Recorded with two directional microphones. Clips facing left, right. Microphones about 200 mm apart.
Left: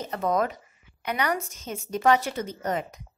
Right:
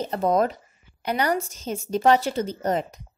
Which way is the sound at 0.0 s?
30° right (ahead or behind).